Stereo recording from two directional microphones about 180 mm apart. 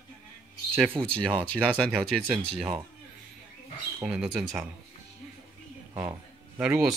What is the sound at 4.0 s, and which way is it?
Speech, 5° right (ahead or behind).